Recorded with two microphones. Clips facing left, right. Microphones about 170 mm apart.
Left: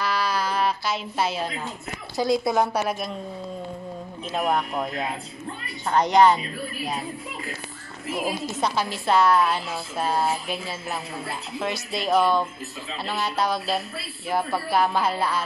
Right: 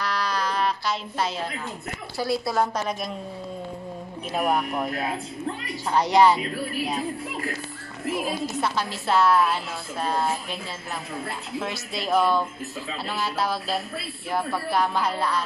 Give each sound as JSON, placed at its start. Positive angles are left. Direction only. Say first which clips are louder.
{"t": 0.0, "sound": "a sound", "louder": "left 2 dB", "side_deg": 5}
{"t": 2.1, "sound": "a woman's voice", "louder": "left 3 dB", "side_deg": 20}
{"t": 4.3, "sound": "a woman's voice", "louder": "even", "side_deg": -5}
{"t": 8.5, "sound": "a woman's voice", "louder": "left 2 dB", "side_deg": 15}
{"t": 9.0, "sound": "a woman's voice", "louder": "left 1 dB", "side_deg": 0}